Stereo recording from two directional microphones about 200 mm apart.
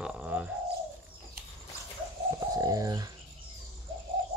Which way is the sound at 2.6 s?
15° right (ahead or behind).